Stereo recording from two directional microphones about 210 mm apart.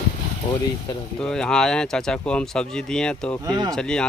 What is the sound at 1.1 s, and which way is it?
Speech, 5° left (ahead or behind).